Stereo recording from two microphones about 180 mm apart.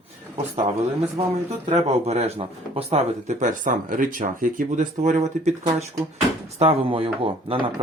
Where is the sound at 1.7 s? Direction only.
35° right (ahead or behind).